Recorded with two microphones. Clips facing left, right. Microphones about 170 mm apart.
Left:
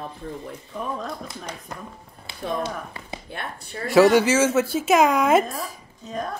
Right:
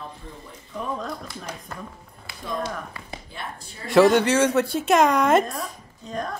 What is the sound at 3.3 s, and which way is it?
Speech, 60° left (ahead or behind).